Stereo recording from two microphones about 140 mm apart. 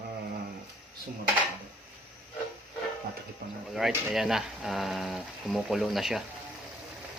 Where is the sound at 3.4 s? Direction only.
90° right.